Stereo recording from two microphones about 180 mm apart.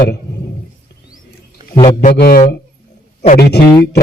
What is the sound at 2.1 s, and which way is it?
A man's voice, 60° left (ahead or behind).